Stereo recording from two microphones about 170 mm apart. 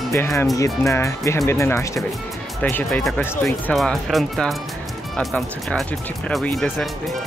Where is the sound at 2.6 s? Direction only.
5° left (ahead or behind).